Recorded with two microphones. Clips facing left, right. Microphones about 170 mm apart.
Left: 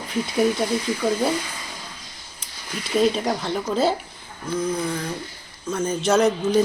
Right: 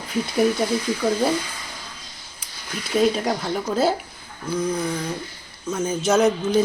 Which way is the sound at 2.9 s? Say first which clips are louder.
Even; centre (ahead or behind).